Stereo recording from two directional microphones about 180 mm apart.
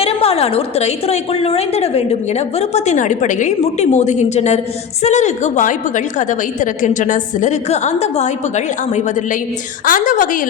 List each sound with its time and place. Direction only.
0.0 s a woman's voice: 35° left (ahead or behind)